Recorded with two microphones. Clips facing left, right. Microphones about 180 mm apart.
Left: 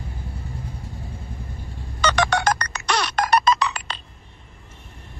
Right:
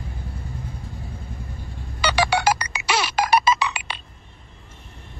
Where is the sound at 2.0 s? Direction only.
10° right (ahead or behind).